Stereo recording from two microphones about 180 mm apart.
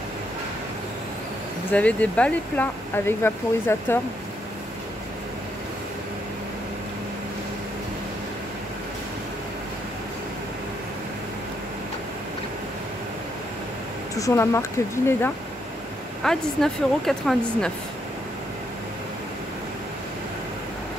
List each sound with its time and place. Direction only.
1.7 s speech: 5° left (ahead or behind)
14.1 s speech: 15° left (ahead or behind)
16.3 s speech: centre (ahead or behind)